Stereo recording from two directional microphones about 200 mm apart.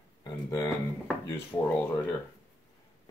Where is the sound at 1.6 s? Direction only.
10° left (ahead or behind).